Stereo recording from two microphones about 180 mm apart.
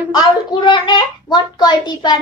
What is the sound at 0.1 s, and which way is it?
A child's voice, 25° left (ahead or behind).